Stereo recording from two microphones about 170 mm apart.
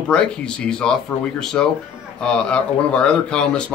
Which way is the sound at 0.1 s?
5° left (ahead or behind).